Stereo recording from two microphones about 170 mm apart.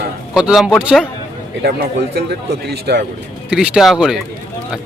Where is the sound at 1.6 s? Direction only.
70° right (ahead or behind).